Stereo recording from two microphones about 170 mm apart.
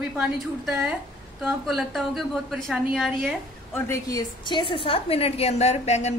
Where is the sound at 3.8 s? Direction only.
20° left (ahead or behind).